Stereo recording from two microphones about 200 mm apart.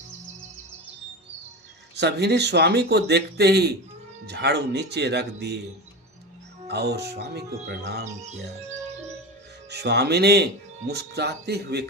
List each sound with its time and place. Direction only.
2.0 s speech: 55° right (ahead or behind)
6.7 s speech: 55° right (ahead or behind)
9.6 s speech: 55° right (ahead or behind)